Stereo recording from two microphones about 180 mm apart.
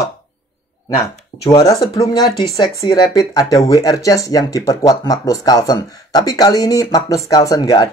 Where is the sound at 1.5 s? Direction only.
20° left (ahead or behind).